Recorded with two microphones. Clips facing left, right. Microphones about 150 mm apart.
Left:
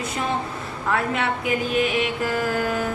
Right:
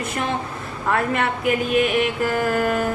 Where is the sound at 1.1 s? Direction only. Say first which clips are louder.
Right 3 dB; 55° right (ahead or behind).